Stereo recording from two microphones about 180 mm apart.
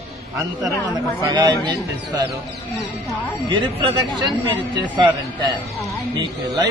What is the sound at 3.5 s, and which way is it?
Speech, 25° right (ahead or behind).